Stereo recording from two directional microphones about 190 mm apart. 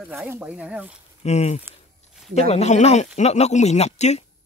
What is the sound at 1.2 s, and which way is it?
Speech, 35° left (ahead or behind).